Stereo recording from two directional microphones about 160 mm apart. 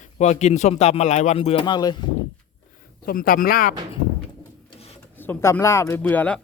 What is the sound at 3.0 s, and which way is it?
Speech, 60° left (ahead or behind).